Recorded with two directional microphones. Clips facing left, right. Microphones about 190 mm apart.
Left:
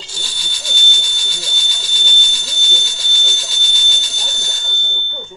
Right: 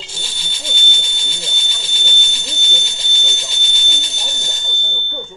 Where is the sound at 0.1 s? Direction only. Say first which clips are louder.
Even; 20° right (ahead or behind).